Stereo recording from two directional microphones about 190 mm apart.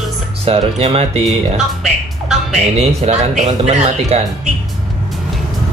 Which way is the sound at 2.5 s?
35° right (ahead or behind).